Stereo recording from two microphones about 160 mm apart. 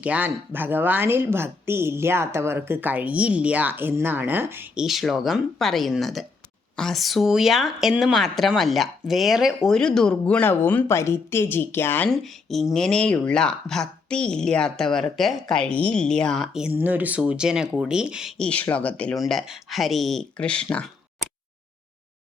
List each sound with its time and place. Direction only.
0.0 s a woman's voice: 10° right (ahead or behind)
4.9 s speech: centre (ahead or behind)
12.5 s speech: centre (ahead or behind)